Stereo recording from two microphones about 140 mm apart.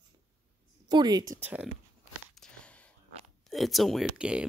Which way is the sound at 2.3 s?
5° left (ahead or behind).